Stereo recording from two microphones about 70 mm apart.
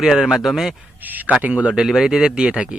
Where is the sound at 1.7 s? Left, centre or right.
Centre.